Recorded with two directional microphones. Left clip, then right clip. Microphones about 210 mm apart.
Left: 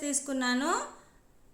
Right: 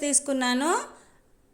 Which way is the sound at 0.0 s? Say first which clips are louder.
Right 6 dB; 35° right (ahead or behind).